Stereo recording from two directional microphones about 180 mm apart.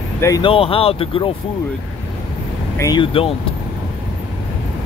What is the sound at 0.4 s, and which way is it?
Speech, 30° left (ahead or behind).